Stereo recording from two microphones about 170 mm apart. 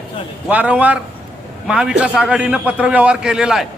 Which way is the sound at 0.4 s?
10° right (ahead or behind).